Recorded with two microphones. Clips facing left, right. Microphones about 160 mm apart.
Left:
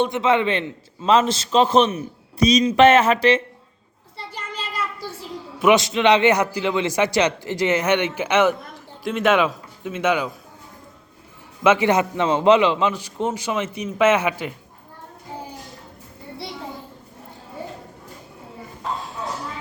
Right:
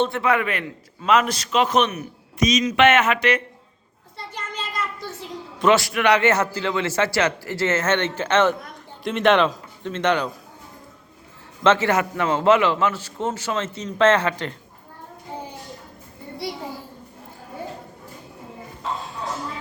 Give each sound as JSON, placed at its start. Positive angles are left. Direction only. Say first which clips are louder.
{"t": 0.0, "sound": "a man's voice", "louder": "left 2 dB", "side_deg": 20}
{"t": 5.5, "sound": "a man's voice", "louder": "left 2 dB", "side_deg": 15}
{"t": 11.6, "sound": "a man's voice", "louder": "left 1 dB", "side_deg": 15}